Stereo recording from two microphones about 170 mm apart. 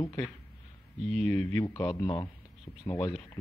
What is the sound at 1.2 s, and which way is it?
Speech, 15° left (ahead or behind).